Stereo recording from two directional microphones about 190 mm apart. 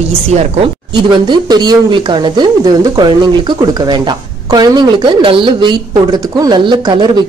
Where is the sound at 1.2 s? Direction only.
25° right (ahead or behind).